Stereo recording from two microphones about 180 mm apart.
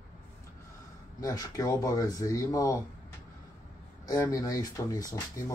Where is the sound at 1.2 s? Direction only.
20° left (ahead or behind).